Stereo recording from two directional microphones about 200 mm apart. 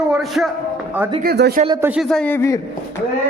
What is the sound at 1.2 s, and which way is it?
Speech, 50° right (ahead or behind).